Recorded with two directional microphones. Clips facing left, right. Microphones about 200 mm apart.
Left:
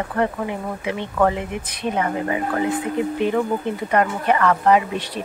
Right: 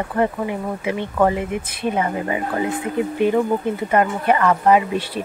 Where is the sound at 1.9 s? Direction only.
15° right (ahead or behind).